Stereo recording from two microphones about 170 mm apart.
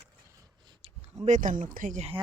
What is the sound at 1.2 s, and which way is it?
Speech, 50° right (ahead or behind).